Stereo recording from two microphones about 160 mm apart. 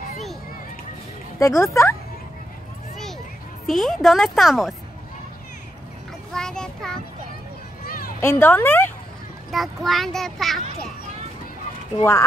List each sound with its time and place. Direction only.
1.4 s speech: 20° left (ahead or behind)
3.6 s a woman's voice: centre (ahead or behind)
6.3 s a child's voice: 5° left (ahead or behind)
8.2 s speech: 15° left (ahead or behind)
9.5 s a woman's voice: centre (ahead or behind)
12.0 s speech: 20° left (ahead or behind)